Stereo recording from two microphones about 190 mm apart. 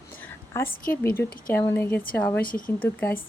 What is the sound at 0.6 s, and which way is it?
Speech, 50° left (ahead or behind).